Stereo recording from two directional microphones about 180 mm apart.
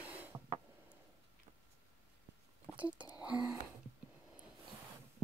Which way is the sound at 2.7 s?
5° right (ahead or behind).